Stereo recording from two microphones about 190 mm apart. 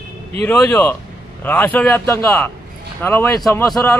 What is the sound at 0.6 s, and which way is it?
A man's voice, 10° left (ahead or behind).